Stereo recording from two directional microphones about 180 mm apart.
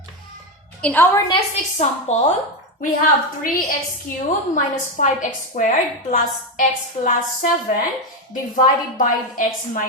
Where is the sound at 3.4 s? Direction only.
50° left (ahead or behind).